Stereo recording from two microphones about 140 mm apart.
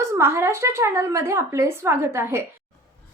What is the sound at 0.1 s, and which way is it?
Speech, 20° right (ahead or behind).